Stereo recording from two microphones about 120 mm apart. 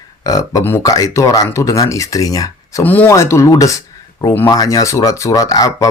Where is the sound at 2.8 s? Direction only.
15° left (ahead or behind).